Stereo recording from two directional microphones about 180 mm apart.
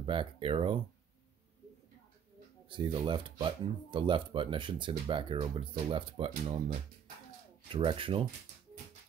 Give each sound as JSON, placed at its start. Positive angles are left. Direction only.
{"t": 0.0, "sound": "speech", "side_deg": -30}
{"t": 2.7, "sound": "speech", "side_deg": -25}
{"t": 7.7, "sound": "speech", "side_deg": -30}